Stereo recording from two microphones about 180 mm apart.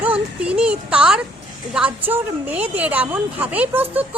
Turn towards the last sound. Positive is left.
turn(degrees=-10)  # may be behind; listen again after turning